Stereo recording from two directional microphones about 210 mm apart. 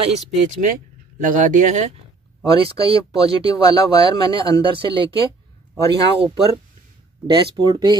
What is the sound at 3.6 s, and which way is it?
Speech, 20° left (ahead or behind).